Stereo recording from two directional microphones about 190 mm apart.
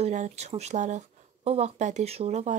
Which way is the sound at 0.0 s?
40° right (ahead or behind).